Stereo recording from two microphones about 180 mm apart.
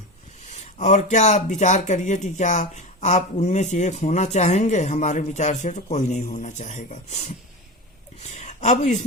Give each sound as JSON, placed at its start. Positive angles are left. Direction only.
{"t": 0.4, "sound": "speech", "side_deg": 40}